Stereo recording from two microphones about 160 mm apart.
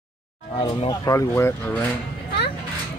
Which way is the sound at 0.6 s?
30° left (ahead or behind).